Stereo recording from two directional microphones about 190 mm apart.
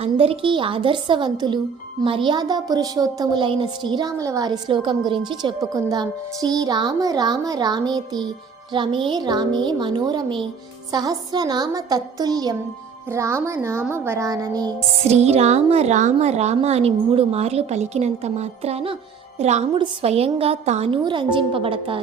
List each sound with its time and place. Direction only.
0.0 s a woman's voice: 30° right (ahead or behind)
15.0 s a woman's voice: 35° right (ahead or behind)